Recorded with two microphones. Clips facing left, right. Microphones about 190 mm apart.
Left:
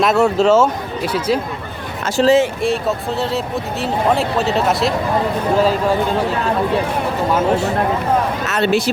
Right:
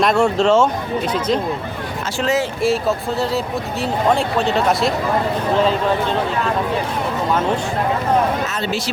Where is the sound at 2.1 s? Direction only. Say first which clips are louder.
Left 7 dB; 35° left (ahead or behind).